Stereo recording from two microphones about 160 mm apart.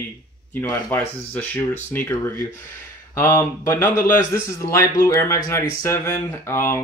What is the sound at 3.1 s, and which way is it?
Speech, 15° left (ahead or behind).